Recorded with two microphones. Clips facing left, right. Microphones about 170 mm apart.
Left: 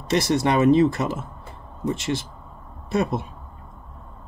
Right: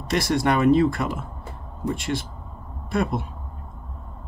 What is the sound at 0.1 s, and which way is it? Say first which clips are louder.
Speech: left 1 dB; 20° left (ahead or behind).